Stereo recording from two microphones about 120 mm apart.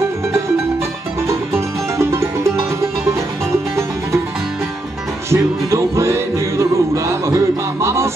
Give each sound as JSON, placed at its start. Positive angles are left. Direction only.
{"t": 1.2, "sound": "music", "side_deg": -25}
{"t": 5.3, "sound": "music", "side_deg": -25}